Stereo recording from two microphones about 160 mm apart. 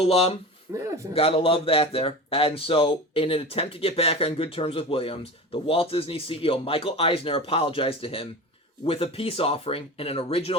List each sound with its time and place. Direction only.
0.0 s a man's voice: 40° left (ahead or behind)
0.7 s a man's voice: 15° right (ahead or behind)
1.1 s a man's voice: 35° left (ahead or behind)